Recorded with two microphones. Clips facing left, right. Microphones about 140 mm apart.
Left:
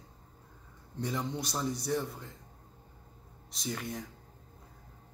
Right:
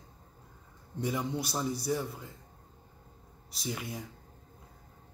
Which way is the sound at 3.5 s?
5° right (ahead or behind).